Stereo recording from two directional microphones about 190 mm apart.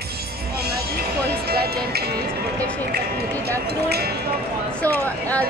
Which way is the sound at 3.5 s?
55° right (ahead or behind).